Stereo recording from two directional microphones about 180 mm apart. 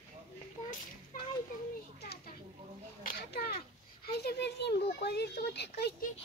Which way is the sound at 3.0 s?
55° left (ahead or behind).